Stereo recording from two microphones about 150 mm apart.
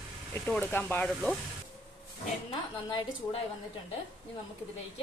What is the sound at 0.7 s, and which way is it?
Speech, 10° left (ahead or behind).